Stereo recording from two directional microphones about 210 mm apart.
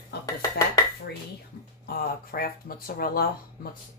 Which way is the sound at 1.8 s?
45° left (ahead or behind).